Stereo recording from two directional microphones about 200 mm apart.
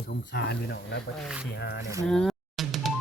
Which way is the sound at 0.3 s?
55° left (ahead or behind).